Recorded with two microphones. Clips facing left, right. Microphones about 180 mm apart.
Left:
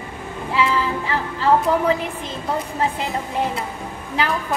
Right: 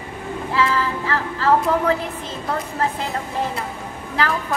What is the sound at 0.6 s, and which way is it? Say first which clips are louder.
Music: left 1 dB; 15° left (ahead or behind).